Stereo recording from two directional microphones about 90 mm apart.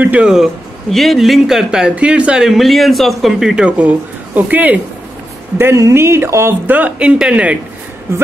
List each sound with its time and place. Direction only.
0.0 s speech: 20° right (ahead or behind)
0.9 s speech: centre (ahead or behind); by 4.7 s 20° right (ahead or behind)
5.6 s speech: 30° right (ahead or behind)
6.7 s speech: 15° right (ahead or behind)